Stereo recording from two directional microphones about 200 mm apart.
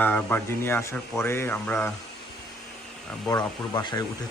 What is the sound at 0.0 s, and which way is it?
Speech, 10° left (ahead or behind).